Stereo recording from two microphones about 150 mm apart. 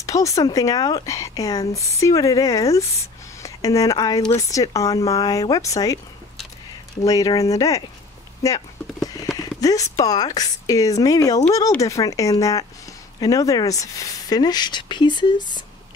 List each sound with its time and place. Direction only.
0.0 s speech: 20° left (ahead or behind)
3.0 s a sound: 20° left (ahead or behind)
4.3 s speech: 20° left (ahead or behind)
7.1 s speech: 25° left (ahead or behind)
8.4 s clip-clop: 25° left (ahead or behind)
9.4 s a sound: 25° left (ahead or behind)
9.9 s speech: 25° left (ahead or behind)